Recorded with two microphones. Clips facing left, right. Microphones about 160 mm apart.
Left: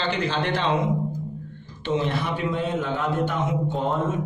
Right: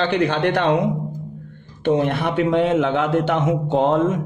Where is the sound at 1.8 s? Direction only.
60° right (ahead or behind); by 4.2 s 80° right.